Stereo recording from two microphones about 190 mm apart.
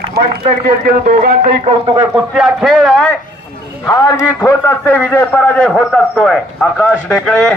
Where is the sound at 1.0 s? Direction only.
50° right (ahead or behind).